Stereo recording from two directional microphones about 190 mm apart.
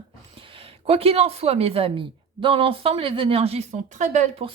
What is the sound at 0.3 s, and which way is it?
A woman's voice, 30° right (ahead or behind).